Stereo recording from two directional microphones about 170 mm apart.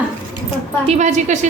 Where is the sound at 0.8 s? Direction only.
40° right (ahead or behind).